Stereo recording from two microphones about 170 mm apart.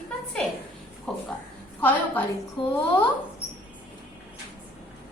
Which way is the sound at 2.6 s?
30° left (ahead or behind).